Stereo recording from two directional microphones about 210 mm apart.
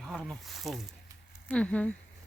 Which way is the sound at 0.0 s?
Centre (ahead or behind).